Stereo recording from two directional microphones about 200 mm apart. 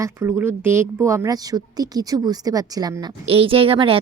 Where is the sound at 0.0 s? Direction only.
15° right (ahead or behind).